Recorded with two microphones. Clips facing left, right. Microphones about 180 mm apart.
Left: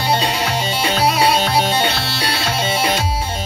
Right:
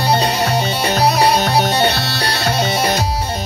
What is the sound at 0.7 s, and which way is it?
Music, 40° right (ahead or behind).